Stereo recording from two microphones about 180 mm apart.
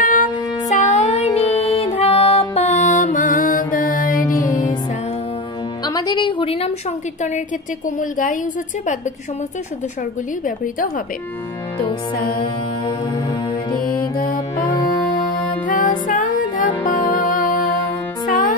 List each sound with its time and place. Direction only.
0.0 s music: 50° left (ahead or behind)
4.3 s music: 20° left (ahead or behind)
5.9 s a sound: 20° left (ahead or behind)
8.0 s a woman's voice: 45° left (ahead or behind)
12.4 s music: 25° left (ahead or behind)
14.1 s music: 50° left (ahead or behind)